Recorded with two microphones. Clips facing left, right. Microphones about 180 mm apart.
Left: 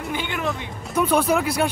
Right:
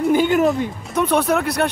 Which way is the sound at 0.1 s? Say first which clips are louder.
Right 12 dB; 45° right (ahead or behind).